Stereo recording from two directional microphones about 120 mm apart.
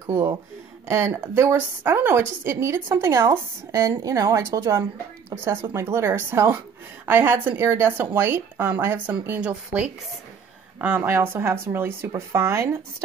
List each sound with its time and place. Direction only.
0.0 s a woman's voice: 25° right (ahead or behind)